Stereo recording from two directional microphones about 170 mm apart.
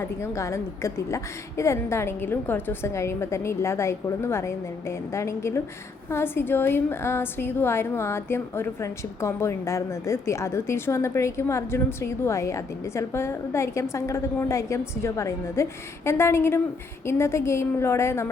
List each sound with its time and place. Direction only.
0.0 s a woman's voice: 15° left (ahead or behind)